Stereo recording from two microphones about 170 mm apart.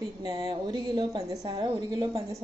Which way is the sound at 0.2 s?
30° right (ahead or behind).